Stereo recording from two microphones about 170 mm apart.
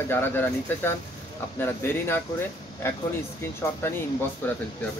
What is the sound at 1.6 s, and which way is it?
Speech, 15° left (ahead or behind).